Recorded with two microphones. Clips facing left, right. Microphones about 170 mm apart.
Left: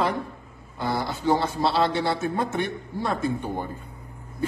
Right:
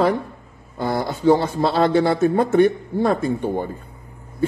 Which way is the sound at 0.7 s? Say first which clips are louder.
Right 5 dB; 45° right (ahead or behind).